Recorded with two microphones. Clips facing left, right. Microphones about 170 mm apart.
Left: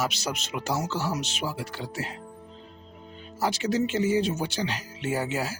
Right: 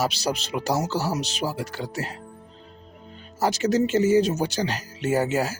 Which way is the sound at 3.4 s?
45° right (ahead or behind).